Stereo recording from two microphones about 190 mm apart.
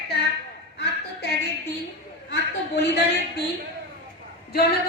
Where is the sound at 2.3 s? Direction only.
65° left (ahead or behind).